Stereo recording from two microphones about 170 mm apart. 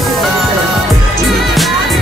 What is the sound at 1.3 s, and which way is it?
Music, centre (ahead or behind).